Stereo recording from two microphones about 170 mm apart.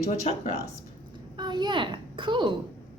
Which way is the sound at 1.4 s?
25° right (ahead or behind).